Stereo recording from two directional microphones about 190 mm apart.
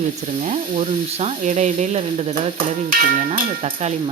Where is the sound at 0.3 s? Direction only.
35° right (ahead or behind).